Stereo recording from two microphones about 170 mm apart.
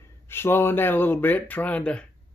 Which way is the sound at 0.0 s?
15° left (ahead or behind).